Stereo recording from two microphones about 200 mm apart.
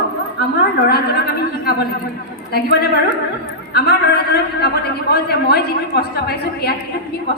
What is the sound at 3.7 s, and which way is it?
A woman's voice, 50° left (ahead or behind).